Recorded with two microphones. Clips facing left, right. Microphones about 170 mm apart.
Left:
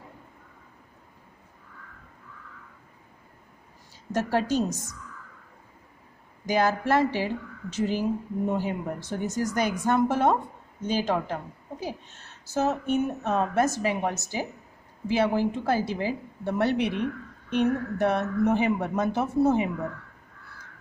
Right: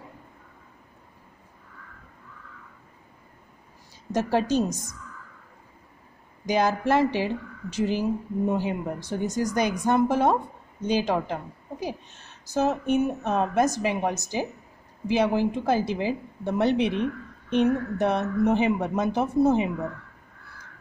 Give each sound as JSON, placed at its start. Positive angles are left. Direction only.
{"t": 4.1, "sound": "a woman's voice", "side_deg": -15}
{"t": 6.4, "sound": "a woman's voice", "side_deg": -20}